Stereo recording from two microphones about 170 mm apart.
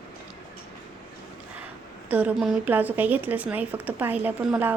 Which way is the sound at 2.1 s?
5° right (ahead or behind).